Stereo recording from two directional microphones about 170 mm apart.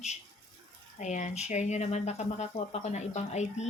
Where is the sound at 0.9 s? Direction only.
45° left (ahead or behind).